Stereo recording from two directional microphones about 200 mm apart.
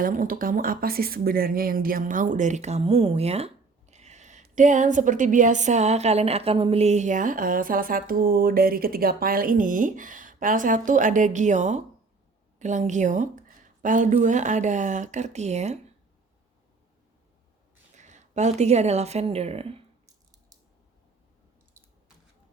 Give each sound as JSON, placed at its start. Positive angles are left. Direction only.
{"t": 0.0, "sound": "speech", "side_deg": -45}
{"t": 17.9, "sound": "speech", "side_deg": -35}